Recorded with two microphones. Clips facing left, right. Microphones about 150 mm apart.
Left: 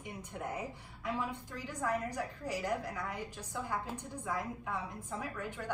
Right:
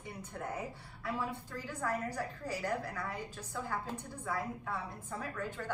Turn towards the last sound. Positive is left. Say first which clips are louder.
# right 1 dB
turn(degrees=15)  # may be behind; listen again after turning